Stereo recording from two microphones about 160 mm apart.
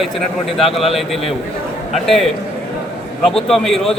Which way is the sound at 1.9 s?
Centre (ahead or behind).